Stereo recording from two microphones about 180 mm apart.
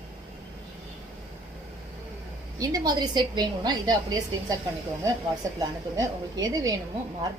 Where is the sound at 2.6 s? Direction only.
20° right (ahead or behind).